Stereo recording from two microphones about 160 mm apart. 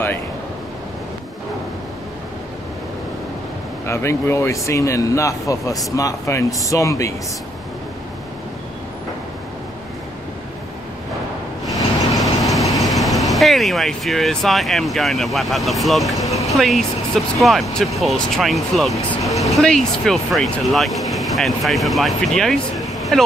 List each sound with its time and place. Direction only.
3.8 s speech: 15° left (ahead or behind)
12.2 s vehicle: centre (ahead or behind)
12.8 s speech: centre (ahead or behind)
16.3 s a sound: 20° left (ahead or behind)
16.5 s speech: centre (ahead or behind)